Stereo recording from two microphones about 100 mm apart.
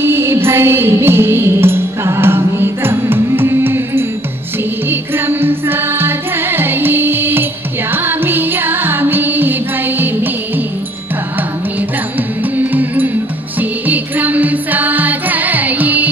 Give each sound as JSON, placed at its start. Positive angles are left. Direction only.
{"t": 0.0, "sound": "music", "side_deg": -25}
{"t": 12.5, "sound": "music", "side_deg": -15}